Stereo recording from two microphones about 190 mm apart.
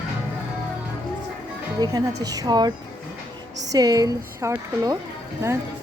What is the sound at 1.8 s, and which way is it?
Speech, 20° right (ahead or behind).